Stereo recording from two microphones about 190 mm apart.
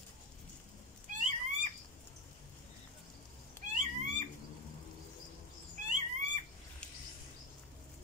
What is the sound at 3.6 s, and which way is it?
Cat, 40° right (ahead or behind).